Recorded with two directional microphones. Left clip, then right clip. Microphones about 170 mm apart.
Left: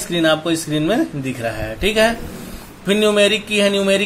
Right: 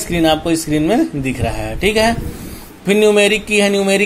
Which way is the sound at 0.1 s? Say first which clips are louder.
Right 2 dB; 20° right (ahead or behind).